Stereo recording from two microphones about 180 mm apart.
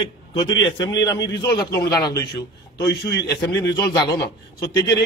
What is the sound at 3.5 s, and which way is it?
Speech, 20° left (ahead or behind).